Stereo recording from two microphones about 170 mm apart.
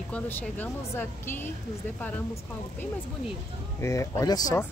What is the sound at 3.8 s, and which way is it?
Speech, 20° left (ahead or behind).